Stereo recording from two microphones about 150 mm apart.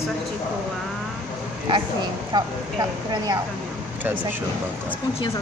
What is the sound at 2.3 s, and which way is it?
Speech, 25° right (ahead or behind).